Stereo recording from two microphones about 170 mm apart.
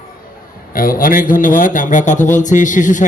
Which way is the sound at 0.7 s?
55° left (ahead or behind).